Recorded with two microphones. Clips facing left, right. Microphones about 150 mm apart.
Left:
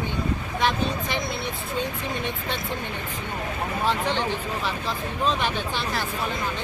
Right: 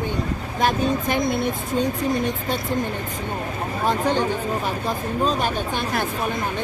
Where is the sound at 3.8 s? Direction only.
45° right (ahead or behind).